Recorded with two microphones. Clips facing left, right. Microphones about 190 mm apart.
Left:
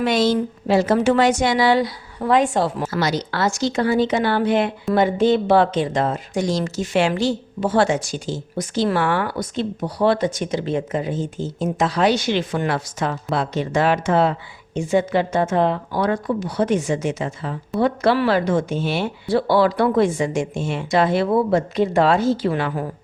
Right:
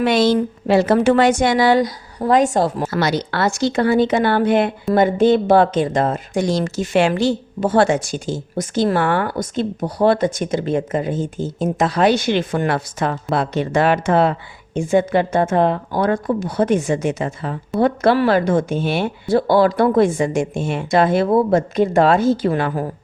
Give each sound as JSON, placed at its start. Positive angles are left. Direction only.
{"t": 0.0, "sound": "a woman's voice", "side_deg": -65}
{"t": 2.9, "sound": "a woman's voice", "side_deg": -60}